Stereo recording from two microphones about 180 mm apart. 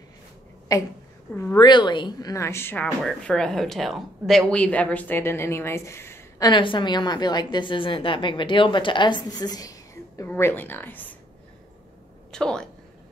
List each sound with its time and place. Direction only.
0.7 s a woman's voice: 15° left (ahead or behind)
6.5 s a woman's voice: 25° left (ahead or behind); by 11.1 s 10° left (ahead or behind)
12.3 s a woman's voice: 5° left (ahead or behind)